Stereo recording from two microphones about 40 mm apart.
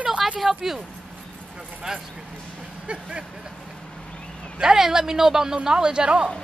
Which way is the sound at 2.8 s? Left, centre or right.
Right.